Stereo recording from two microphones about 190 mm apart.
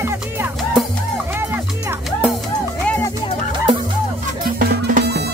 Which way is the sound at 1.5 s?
10° right (ahead or behind).